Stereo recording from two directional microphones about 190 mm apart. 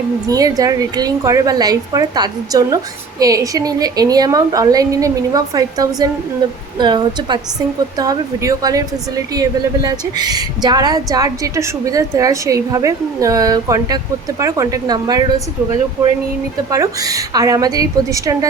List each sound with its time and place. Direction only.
0.3 s a woman's voice: 20° right (ahead or behind)
16.0 s speech: 5° right (ahead or behind)
16.7 s a woman's voice: 20° right (ahead or behind)